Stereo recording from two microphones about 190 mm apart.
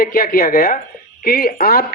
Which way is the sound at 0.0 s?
50° left (ahead or behind).